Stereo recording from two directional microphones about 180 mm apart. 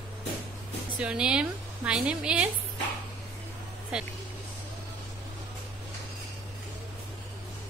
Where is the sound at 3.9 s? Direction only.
5° right (ahead or behind).